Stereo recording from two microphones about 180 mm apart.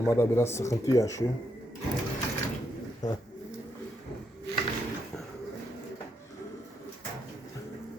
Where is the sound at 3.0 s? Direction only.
20° left (ahead or behind).